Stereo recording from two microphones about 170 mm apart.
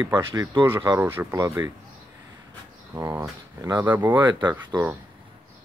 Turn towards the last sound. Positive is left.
turn(degrees=-15)  # may be behind; listen again after turning